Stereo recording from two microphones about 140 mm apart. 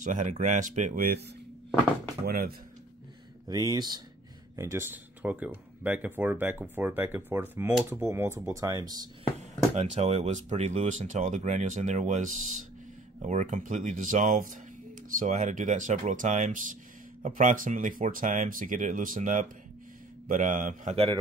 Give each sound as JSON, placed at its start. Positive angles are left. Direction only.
{"t": 0.0, "sound": "speech", "side_deg": -60}
{"t": 2.2, "sound": "speech", "side_deg": -90}
{"t": 3.4, "sound": "speech", "side_deg": -30}
{"t": 4.6, "sound": "speech", "side_deg": -20}
{"t": 9.8, "sound": "speech", "side_deg": -55}
{"t": 20.9, "sound": "a man's voice", "side_deg": -45}